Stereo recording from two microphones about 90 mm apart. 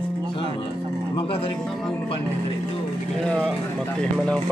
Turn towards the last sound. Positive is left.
turn(degrees=10)  # may be behind; listen again after turning